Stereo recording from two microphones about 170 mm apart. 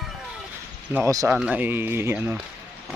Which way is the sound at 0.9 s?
15° right (ahead or behind).